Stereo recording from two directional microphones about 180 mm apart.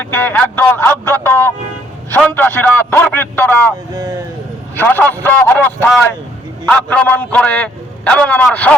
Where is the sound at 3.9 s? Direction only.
20° right (ahead or behind).